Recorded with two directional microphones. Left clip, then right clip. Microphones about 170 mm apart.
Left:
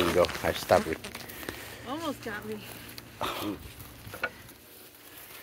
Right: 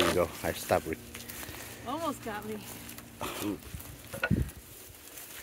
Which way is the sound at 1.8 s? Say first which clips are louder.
Right 1 dB; 15° right (ahead or behind).